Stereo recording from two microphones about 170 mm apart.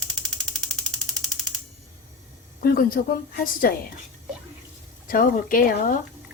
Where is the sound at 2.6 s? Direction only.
55° left (ahead or behind).